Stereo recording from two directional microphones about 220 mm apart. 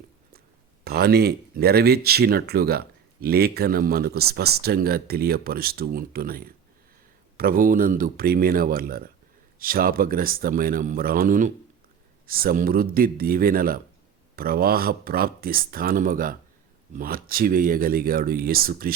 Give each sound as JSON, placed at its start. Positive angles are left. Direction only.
{"t": 0.9, "sound": "speech", "side_deg": -45}